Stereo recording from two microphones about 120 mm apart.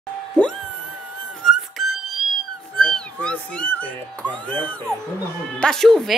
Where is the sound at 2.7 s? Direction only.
10° left (ahead or behind).